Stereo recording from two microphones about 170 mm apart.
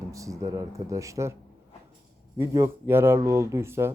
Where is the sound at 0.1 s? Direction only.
20° right (ahead or behind).